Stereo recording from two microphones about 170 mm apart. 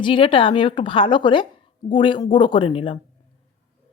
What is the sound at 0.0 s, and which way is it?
Speech, 30° left (ahead or behind).